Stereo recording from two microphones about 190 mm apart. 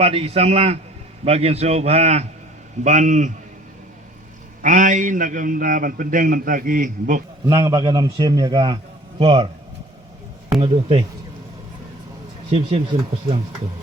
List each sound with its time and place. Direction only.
0.0 s a man's voice: 30° right (ahead or behind)
4.6 s a man's voice: 45° right (ahead or behind)
7.4 s a man's voice: 20° right (ahead or behind)
10.6 s a man's voice: 25° right (ahead or behind)
12.5 s a man's voice: 35° right (ahead or behind)